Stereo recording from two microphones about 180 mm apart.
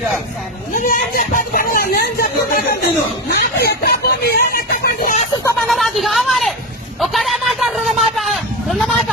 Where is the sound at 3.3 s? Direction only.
60° left (ahead or behind).